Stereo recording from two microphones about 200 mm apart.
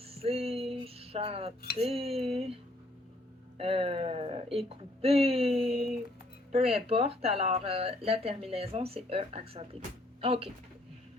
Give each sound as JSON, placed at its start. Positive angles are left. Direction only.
{"t": 0.0, "sound": "music", "side_deg": -30}
{"t": 1.8, "sound": "speech", "side_deg": -30}
{"t": 3.6, "sound": "speech", "side_deg": -30}
{"t": 5.5, "sound": "a sound", "side_deg": 0}
{"t": 6.6, "sound": "speech", "side_deg": -30}